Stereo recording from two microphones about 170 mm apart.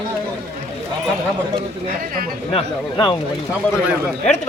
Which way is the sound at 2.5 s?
30° left (ahead or behind).